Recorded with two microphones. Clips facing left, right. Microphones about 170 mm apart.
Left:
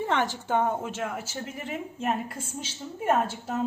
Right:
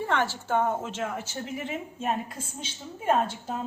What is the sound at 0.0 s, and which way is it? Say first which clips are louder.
A woman's voice: left 1 dB; 20° left (ahead or behind).